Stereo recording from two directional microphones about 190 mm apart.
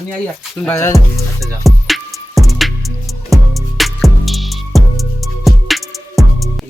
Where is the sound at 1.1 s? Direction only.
Centre (ahead or behind).